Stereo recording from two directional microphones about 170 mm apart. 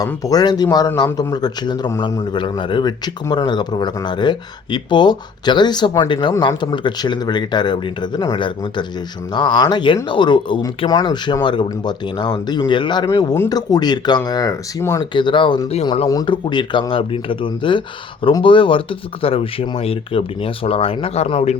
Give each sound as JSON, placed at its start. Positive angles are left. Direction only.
{"t": 0.0, "sound": "speech", "side_deg": 20}